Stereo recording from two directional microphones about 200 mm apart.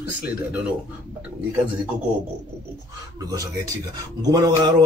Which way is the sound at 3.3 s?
15° right (ahead or behind).